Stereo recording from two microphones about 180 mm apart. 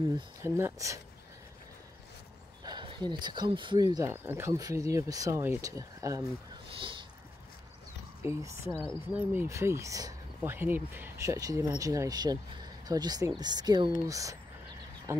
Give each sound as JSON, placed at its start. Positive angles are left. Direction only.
{"t": 0.1, "sound": "speech", "side_deg": -15}
{"t": 2.6, "sound": "speech", "side_deg": -25}
{"t": 8.2, "sound": "speech", "side_deg": -15}
{"t": 15.1, "sound": "frog", "side_deg": -15}